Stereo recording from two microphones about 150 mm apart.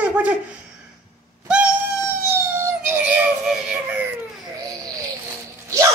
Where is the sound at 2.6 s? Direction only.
15° right (ahead or behind).